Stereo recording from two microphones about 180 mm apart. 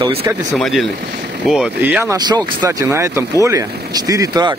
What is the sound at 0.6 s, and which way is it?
Speech, centre (ahead or behind).